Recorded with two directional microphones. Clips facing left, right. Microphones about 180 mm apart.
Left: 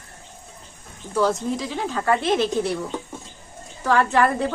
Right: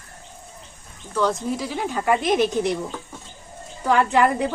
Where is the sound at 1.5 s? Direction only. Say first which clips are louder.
Even; 5° right (ahead or behind).